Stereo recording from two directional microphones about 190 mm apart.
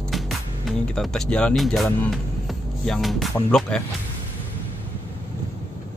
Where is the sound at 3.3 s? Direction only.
5° left (ahead or behind).